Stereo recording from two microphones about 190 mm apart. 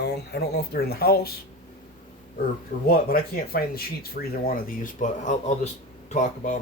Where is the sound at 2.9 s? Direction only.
50° left (ahead or behind).